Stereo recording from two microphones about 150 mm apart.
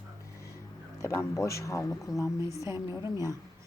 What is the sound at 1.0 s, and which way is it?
Speech, 20° left (ahead or behind).